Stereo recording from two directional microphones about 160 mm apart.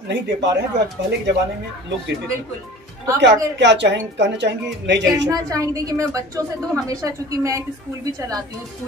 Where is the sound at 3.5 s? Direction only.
90° right.